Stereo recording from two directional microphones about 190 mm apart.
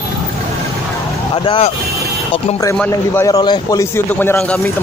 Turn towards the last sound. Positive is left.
turn(degrees=10)  # may be behind; listen again after turning